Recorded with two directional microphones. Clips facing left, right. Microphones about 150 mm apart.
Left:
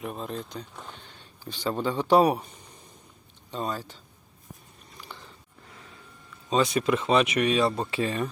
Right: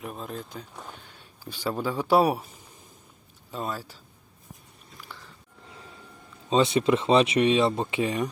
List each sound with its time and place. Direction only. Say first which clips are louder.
0.0 s speech: left 2 dB; centre (ahead or behind)
3.5 s speech: left 1 dB; 5° right (ahead or behind)
4.9 s biting: left 1 dB; 25° left (ahead or behind)
6.5 s speech: right 2 dB; 25° right (ahead or behind)